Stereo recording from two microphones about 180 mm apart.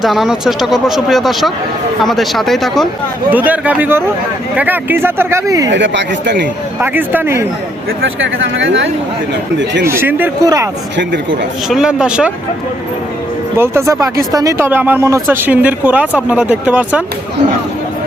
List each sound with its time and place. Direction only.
0.0 s speech: centre (ahead or behind)
5.6 s speech: 90° right; by 6.5 s 70° right (ahead or behind)
6.7 s speech: 10° right (ahead or behind)
7.9 s speech: 90° right
9.8 s speech: 15° right (ahead or behind)
10.9 s speech: 80° right
11.7 s speech: 5° right (ahead or behind)
13.6 s speech: 15° right (ahead or behind)